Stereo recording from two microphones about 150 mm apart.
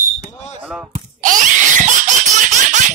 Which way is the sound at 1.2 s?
60° right (ahead or behind).